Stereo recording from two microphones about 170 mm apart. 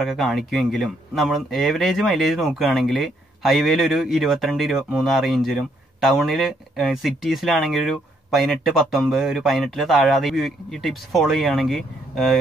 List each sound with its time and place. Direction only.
0.0 s speech: centre (ahead or behind)